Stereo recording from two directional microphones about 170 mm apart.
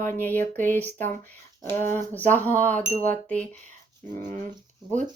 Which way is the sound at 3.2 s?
10° left (ahead or behind).